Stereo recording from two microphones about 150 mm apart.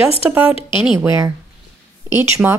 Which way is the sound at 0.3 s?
10° right (ahead or behind).